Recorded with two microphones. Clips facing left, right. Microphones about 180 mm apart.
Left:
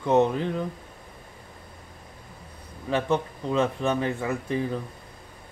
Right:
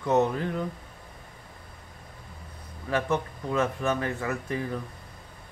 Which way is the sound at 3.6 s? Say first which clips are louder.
Left 2 dB; 30° left (ahead or behind).